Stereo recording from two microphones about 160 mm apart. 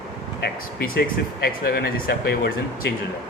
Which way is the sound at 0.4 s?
75° left (ahead or behind).